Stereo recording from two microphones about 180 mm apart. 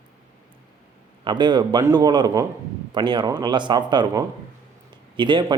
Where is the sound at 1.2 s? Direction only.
25° right (ahead or behind).